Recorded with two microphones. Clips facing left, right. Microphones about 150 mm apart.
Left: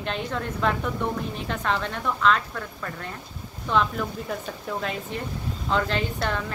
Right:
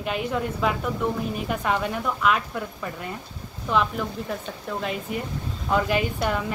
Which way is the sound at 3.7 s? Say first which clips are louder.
Even; 5° right (ahead or behind).